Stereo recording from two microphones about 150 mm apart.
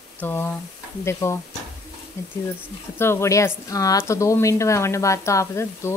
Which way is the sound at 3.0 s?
15° left (ahead or behind).